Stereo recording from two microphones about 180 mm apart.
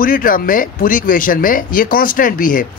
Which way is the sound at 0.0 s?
50° left (ahead or behind).